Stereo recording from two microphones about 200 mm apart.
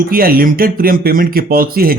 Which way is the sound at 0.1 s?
45° right (ahead or behind).